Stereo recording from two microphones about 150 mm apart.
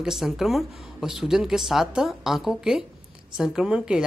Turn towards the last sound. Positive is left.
turn(degrees=-5)  # may be behind; listen again after turning